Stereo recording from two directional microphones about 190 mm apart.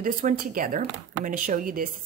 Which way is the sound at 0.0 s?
45° right (ahead or behind).